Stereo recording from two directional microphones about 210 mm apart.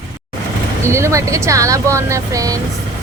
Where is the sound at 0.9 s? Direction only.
15° right (ahead or behind).